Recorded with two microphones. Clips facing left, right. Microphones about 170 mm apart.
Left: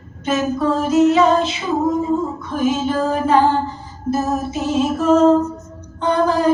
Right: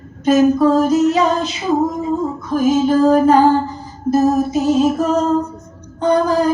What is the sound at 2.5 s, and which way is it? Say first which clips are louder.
Female singing: right 6 dB; 40° right (ahead or behind).